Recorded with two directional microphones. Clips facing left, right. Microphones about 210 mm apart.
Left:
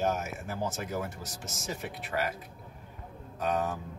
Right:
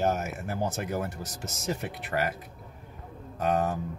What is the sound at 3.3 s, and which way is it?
Speech, 55° right (ahead or behind).